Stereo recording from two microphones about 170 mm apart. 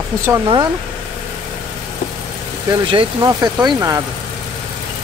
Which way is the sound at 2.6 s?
20° right (ahead or behind).